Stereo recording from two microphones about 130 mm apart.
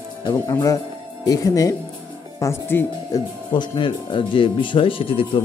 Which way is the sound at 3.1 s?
35° left (ahead or behind).